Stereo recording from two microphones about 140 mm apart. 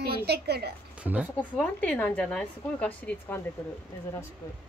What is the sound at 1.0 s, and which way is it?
Speech, 15° left (ahead or behind).